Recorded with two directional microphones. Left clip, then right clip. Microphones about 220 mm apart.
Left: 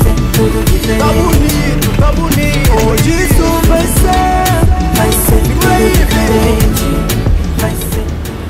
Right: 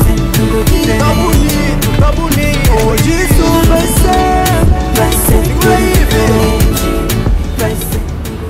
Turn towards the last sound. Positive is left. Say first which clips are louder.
# right 1 dB
turn(degrees=0)  # may be behind; listen again after turning